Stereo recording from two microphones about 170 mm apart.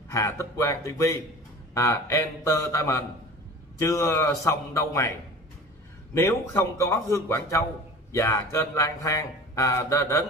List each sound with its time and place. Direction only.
0.1 s speech: 15° left (ahead or behind)
6.1 s speech: 15° left (ahead or behind)